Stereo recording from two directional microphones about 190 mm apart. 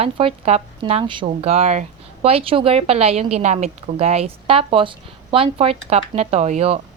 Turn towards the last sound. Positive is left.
turn(degrees=-35)  # may be behind; listen again after turning